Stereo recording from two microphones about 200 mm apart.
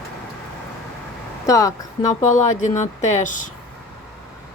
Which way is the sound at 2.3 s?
40° left (ahead or behind).